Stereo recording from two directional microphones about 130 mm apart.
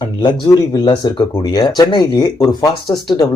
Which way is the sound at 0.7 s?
35° left (ahead or behind).